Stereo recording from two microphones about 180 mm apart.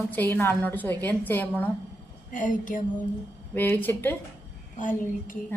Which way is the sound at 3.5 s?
10° left (ahead or behind).